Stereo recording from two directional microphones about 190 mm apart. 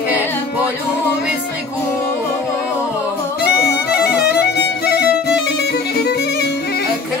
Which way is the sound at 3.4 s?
55° left (ahead or behind).